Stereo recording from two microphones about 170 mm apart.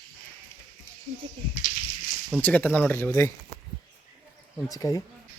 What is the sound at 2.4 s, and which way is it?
Speech, 10° left (ahead or behind).